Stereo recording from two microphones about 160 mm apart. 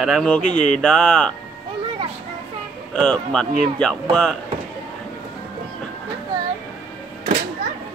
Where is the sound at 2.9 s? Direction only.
5° left (ahead or behind).